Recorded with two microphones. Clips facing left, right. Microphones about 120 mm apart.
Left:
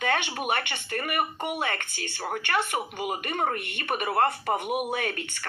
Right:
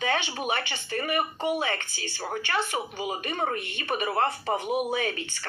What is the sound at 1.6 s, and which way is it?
A woman's voice, 55° left (ahead or behind).